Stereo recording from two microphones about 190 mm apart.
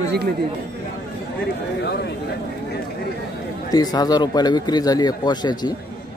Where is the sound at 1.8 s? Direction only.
60° left (ahead or behind).